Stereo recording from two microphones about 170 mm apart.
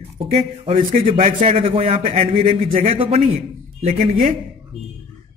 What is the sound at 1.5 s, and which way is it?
A man's voice, 35° right (ahead or behind).